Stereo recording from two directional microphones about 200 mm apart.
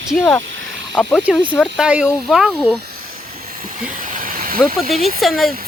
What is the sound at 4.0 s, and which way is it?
Vehicle, 40° right (ahead or behind).